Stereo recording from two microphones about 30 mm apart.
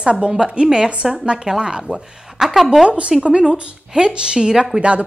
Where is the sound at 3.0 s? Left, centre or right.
Right.